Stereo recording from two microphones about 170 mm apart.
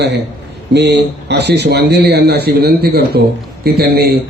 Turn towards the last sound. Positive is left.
turn(degrees=-65)  # may be behind; listen again after turning